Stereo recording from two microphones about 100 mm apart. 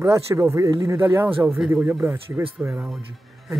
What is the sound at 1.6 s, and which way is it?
Speech, 10° right (ahead or behind).